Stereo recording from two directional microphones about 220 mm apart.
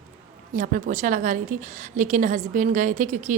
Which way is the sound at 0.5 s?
35° right (ahead or behind).